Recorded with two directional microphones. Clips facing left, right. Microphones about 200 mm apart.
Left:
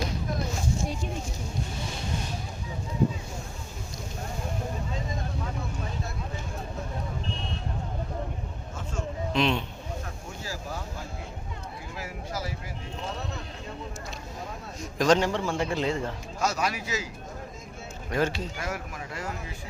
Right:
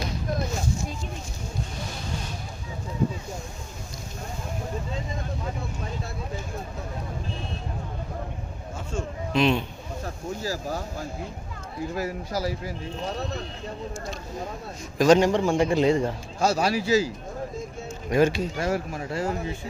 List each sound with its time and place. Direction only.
9.3 s speech: 5° right (ahead or behind)
10.0 s speech: 40° right (ahead or behind)
11.9 s speech: 40° right (ahead or behind)
14.8 s a man's voice: 5° right (ahead or behind)
16.4 s speech: 30° right (ahead or behind)
18.1 s a man's voice: 10° right (ahead or behind)
18.5 s speech: 30° right (ahead or behind)